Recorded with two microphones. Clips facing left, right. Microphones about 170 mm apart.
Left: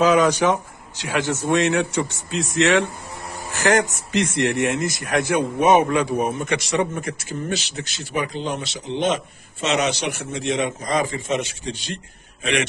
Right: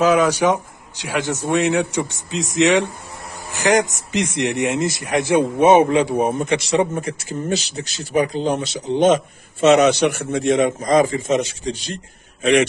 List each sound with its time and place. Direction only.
0.0 s a man's voice: 5° right (ahead or behind); by 12.0 s 40° right (ahead or behind)